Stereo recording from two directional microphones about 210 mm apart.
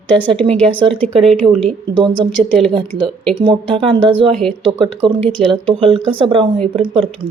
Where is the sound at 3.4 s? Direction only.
25° right (ahead or behind).